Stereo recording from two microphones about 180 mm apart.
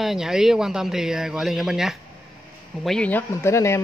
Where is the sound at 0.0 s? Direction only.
Centre (ahead or behind).